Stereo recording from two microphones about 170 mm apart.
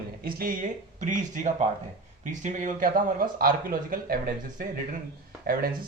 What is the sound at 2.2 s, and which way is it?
Speech, 45° right (ahead or behind).